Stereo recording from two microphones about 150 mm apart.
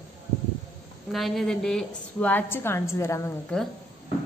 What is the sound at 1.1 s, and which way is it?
A woman's voice, centre (ahead or behind).